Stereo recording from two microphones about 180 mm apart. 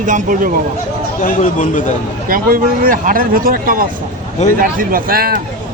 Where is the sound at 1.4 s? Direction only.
45° left (ahead or behind).